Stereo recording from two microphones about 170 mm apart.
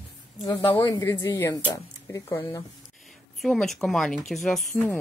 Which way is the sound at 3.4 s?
Centre (ahead or behind).